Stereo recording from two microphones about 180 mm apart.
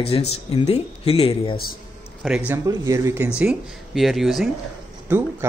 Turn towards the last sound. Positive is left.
turn(degrees=-10)  # may be behind; listen again after turning